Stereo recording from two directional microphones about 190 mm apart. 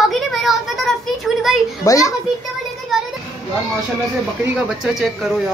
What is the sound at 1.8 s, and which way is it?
Speech, 15° left (ahead or behind).